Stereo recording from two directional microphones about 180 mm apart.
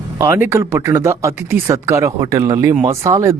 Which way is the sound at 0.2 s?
10° right (ahead or behind).